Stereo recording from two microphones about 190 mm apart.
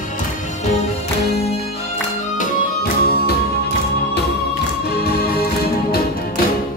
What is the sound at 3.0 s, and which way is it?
Music, 55° left (ahead or behind).